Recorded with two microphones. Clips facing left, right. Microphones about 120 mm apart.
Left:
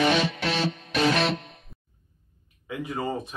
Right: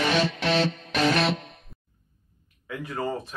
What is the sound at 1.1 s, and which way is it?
Music, centre (ahead or behind).